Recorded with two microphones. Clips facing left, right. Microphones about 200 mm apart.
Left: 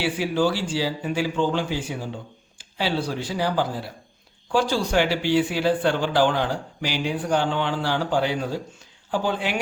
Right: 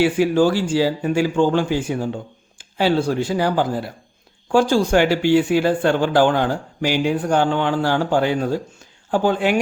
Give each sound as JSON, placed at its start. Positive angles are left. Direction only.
{"t": 0.0, "sound": "speech", "side_deg": -50}